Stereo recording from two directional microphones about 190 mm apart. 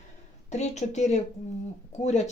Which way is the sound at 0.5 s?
35° left (ahead or behind).